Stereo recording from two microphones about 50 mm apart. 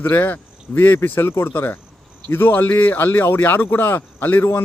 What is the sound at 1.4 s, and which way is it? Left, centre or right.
Speech, left.